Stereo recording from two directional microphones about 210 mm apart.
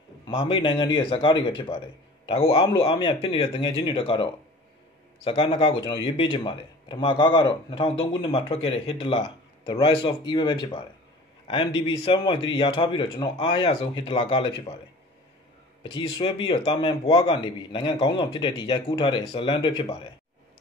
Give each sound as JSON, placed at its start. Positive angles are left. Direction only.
{"t": 0.3, "sound": "speech", "side_deg": 20}
{"t": 2.8, "sound": "speech", "side_deg": 25}
{"t": 15.8, "sound": "speech", "side_deg": 25}